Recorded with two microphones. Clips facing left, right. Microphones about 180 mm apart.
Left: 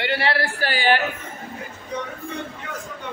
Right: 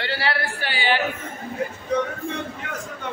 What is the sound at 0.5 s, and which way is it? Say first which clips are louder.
Speech: left 3 dB; 45° left (ahead or behind).